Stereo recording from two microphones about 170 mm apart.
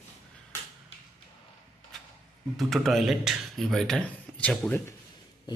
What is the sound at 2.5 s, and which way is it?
A man's voice, centre (ahead or behind).